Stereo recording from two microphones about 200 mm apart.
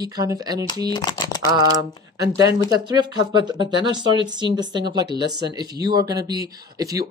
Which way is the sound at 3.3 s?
20° right (ahead or behind).